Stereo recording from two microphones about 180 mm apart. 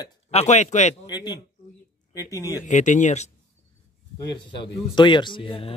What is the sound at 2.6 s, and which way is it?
Speech, 40° left (ahead or behind).